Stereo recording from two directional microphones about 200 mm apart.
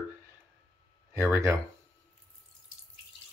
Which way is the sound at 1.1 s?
10° right (ahead or behind).